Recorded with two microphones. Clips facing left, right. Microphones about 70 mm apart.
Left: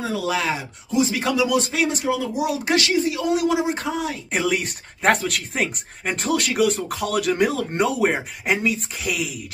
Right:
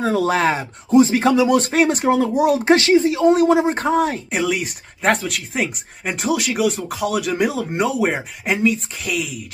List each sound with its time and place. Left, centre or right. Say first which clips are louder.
0.0 s speech: right 6 dB; right
1.6 s speech: right 6 dB; right
2.6 s speech: right 5 dB; right
4.3 s speech: right 2 dB; centre